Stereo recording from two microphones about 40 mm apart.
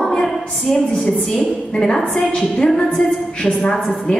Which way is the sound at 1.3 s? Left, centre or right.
Centre.